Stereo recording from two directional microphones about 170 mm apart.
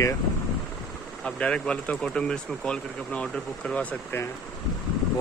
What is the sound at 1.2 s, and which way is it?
Speech, 5° left (ahead or behind).